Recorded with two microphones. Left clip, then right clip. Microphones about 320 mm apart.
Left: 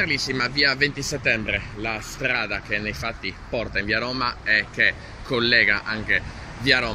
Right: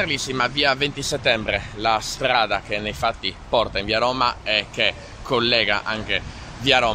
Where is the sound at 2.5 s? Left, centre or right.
Right.